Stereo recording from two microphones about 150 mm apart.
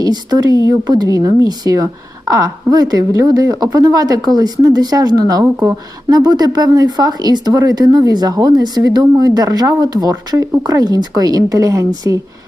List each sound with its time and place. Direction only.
0.0 s speech: 25° right (ahead or behind)